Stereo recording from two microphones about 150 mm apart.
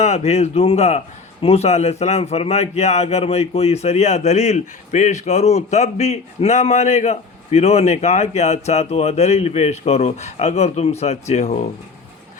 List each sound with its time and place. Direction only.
0.0 s a man's voice: 45° left (ahead or behind)